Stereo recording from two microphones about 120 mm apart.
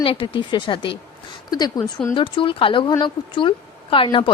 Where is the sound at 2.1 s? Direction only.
45° left (ahead or behind).